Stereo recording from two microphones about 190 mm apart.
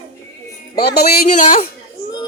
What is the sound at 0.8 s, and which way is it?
Speech, 55° left (ahead or behind).